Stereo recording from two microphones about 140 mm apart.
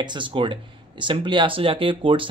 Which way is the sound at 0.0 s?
35° right (ahead or behind).